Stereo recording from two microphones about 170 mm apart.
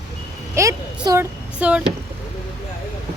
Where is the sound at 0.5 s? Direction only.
15° right (ahead or behind).